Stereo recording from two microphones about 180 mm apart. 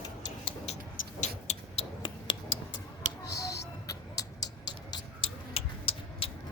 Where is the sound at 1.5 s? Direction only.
30° left (ahead or behind).